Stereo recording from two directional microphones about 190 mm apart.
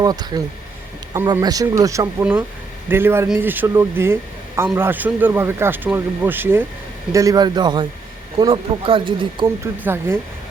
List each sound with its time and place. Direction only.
0.0 s speech: 20° right (ahead or behind)
9.8 s speech: 10° right (ahead or behind)